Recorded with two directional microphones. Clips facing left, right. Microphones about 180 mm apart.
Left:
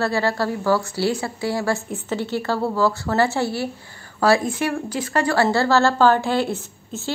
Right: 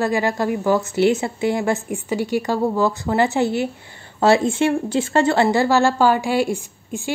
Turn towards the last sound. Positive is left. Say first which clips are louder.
# right 3 dB
turn(degrees=-10)  # may be behind; listen again after turning